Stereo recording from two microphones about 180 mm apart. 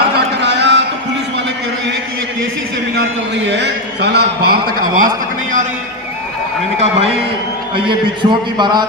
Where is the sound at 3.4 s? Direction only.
75° right (ahead or behind); by 5.1 s 55° right (ahead or behind).